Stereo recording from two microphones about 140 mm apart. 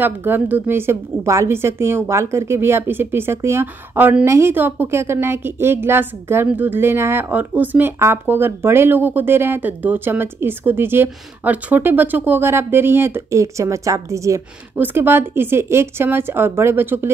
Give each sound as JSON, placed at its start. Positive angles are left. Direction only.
{"t": 0.0, "sound": "a woman's voice", "side_deg": -15}